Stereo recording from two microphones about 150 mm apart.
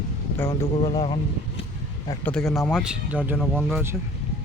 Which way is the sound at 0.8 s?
35° left (ahead or behind).